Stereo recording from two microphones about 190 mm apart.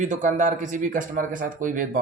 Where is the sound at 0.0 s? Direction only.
40° right (ahead or behind).